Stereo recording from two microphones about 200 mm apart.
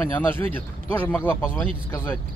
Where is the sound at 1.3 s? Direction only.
5° right (ahead or behind).